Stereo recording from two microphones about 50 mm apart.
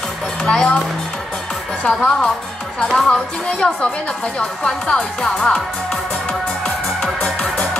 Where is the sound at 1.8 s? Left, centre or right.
Centre.